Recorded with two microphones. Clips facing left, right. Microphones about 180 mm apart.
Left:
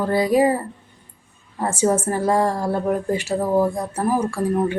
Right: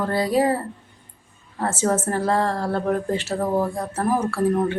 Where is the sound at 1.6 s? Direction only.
10° left (ahead or behind).